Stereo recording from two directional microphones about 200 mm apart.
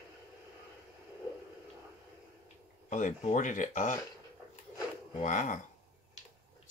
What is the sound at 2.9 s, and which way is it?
Speech, 40° left (ahead or behind).